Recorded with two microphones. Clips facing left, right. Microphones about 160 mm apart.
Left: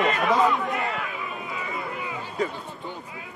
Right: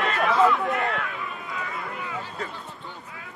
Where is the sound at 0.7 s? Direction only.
5° left (ahead or behind).